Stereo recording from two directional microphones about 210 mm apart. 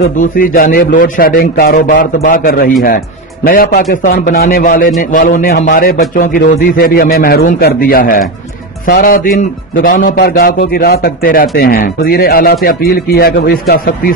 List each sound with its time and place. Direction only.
0.0 s a man's voice: 40° left (ahead or behind)